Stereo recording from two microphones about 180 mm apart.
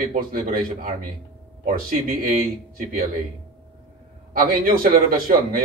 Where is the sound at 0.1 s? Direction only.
50° right (ahead or behind).